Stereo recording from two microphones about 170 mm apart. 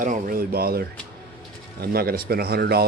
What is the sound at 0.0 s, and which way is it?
Speech, 55° right (ahead or behind).